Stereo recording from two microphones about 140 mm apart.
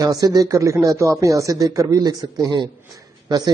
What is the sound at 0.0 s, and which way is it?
A man's voice, 25° right (ahead or behind).